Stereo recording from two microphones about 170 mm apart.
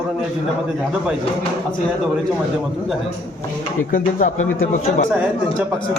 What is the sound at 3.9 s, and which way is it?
Speech, 50° left (ahead or behind).